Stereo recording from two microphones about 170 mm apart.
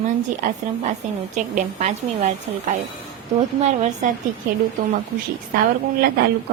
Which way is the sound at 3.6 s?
45° right (ahead or behind).